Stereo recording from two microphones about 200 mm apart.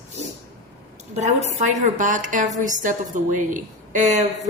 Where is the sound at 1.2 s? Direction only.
35° right (ahead or behind).